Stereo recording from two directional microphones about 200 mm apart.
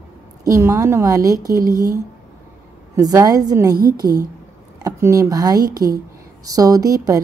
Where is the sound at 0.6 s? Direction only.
15° right (ahead or behind).